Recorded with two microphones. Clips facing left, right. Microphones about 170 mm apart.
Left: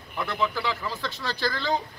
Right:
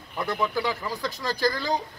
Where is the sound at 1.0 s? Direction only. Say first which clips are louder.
Right 5 dB; 40° right (ahead or behind).